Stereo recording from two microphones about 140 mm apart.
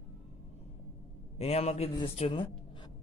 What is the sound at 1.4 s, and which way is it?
A man's voice, 50° left (ahead or behind).